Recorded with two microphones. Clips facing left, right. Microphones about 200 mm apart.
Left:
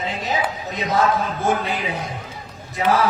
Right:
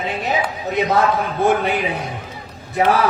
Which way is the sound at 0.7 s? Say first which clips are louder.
Right 3 dB; 60° right (ahead or behind).